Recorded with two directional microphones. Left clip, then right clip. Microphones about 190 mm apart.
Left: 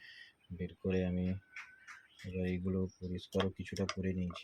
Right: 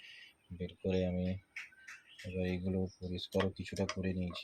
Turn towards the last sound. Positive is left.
turn(degrees=15)  # may be behind; listen again after turning